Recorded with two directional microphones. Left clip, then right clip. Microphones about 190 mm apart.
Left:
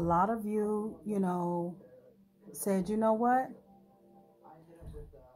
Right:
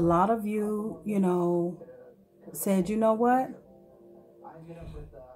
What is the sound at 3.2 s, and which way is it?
Speech, 25° left (ahead or behind).